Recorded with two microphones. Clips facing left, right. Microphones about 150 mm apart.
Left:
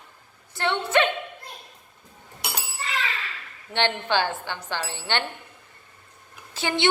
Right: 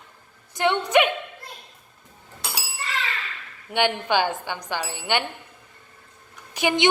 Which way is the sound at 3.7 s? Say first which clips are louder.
Right 2 dB; 15° right (ahead or behind).